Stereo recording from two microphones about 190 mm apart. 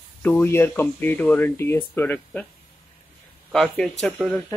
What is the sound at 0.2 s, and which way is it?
Speech, 10° left (ahead or behind).